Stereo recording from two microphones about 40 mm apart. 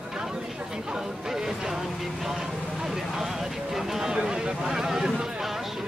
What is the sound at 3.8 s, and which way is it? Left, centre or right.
Speech, centre.